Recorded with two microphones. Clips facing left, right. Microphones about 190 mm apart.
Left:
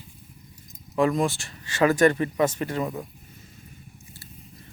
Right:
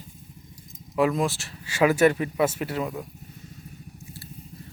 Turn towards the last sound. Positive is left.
turn(degrees=0)  # may be behind; listen again after turning